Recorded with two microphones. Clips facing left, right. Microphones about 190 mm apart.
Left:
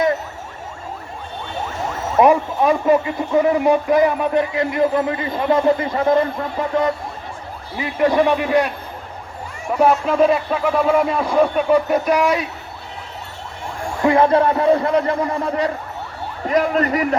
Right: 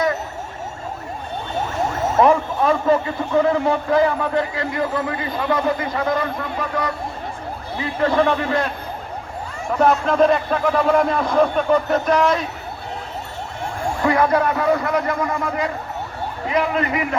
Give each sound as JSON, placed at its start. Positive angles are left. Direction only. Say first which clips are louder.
{"t": 2.1, "sound": "a man's voice", "louder": "left 2 dB", "side_deg": 15}
{"t": 9.7, "sound": "a man's voice", "louder": "left 1 dB", "side_deg": 10}
{"t": 14.0, "sound": "speech", "louder": "left 4 dB", "side_deg": 25}
{"t": 16.5, "sound": "a man's voice", "louder": "left 3 dB", "side_deg": 45}